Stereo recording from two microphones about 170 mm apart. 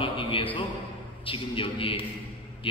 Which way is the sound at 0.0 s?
30° left (ahead or behind).